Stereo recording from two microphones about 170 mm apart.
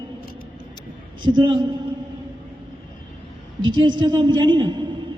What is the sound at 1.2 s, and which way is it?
Speech, 25° right (ahead or behind).